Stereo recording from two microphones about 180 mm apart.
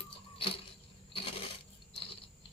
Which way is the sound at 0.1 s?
30° left (ahead or behind).